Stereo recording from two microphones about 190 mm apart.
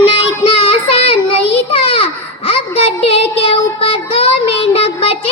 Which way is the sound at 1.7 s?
30° left (ahead or behind).